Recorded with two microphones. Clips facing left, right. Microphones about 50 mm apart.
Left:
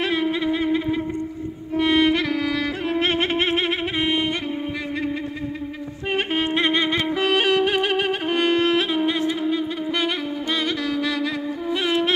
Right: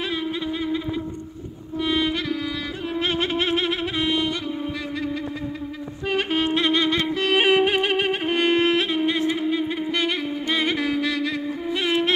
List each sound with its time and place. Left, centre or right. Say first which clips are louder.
0.0 s a sound: left 5 dB; left
1.8 s music: left 5 dB; left
3.0 s music: left 1 dB; left
6.0 s music: even; left
7.3 s music: right 3 dB; centre
10.6 s music: right 3 dB; centre
11.0 s a sound: even; centre
11.7 s music: left 1 dB; centre